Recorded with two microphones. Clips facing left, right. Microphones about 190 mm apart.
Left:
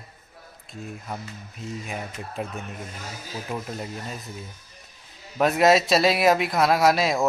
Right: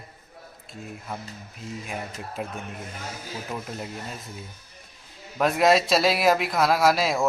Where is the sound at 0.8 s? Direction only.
Centre (ahead or behind).